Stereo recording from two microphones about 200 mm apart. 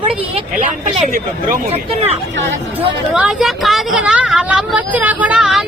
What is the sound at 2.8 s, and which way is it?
Speech, 5° right (ahead or behind).